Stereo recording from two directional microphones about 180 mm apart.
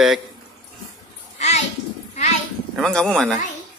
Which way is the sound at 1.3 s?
40° left (ahead or behind).